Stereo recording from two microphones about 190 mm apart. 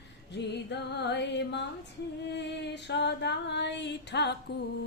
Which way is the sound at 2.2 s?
65° left (ahead or behind).